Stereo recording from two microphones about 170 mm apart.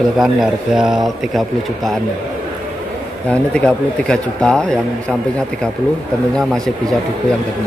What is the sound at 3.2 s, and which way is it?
Speech, 5° left (ahead or behind).